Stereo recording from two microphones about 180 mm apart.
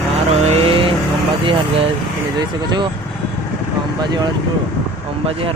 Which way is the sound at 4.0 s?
25° right (ahead or behind).